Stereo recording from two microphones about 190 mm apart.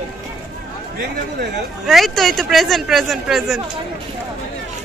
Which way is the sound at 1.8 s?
Centre (ahead or behind).